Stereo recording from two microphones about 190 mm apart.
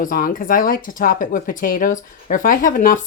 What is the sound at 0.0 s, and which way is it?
Speech, 45° left (ahead or behind).